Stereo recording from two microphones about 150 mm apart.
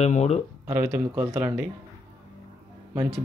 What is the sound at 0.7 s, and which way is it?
Speech, 15° right (ahead or behind).